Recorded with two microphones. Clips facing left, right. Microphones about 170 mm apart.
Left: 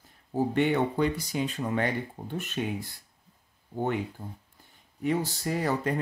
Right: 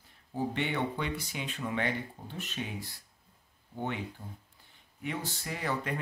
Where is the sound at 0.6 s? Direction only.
45° left (ahead or behind).